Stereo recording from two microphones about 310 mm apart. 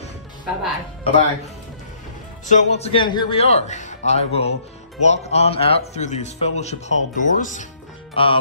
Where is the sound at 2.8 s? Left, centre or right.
Centre.